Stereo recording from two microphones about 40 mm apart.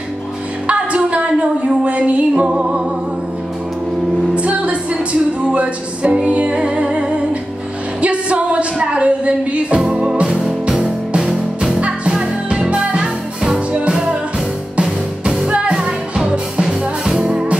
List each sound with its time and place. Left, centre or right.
0.7 s music: right
4.4 s music: right
9.8 s music: right
11.8 s music: right
17.0 s music: centre
17.3 s music: right